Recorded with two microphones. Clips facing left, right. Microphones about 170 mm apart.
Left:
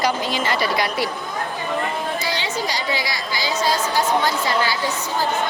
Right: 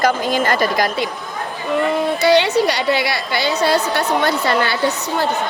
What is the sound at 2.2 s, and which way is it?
A woman's voice, 70° right (ahead or behind).